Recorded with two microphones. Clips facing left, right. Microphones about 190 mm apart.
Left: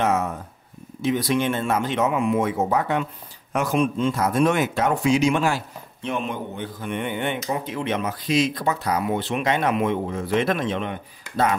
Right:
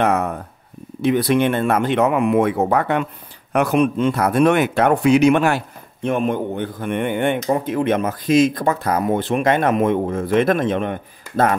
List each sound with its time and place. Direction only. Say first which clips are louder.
0.0 s speech: right 4 dB; 60° right (ahead or behind)
6.0 s a man's voice: right 8 dB; 50° right (ahead or behind)